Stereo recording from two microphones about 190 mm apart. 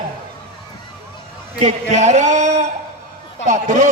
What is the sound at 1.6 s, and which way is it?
Speech, 35° right (ahead or behind).